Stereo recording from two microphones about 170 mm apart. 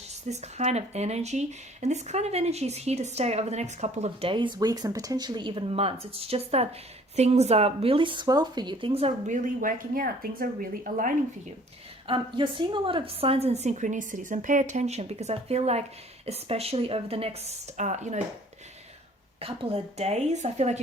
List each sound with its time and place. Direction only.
0.1 s speech: 40° right (ahead or behind)
12.0 s speech: 30° right (ahead or behind)
19.4 s speech: 35° right (ahead or behind)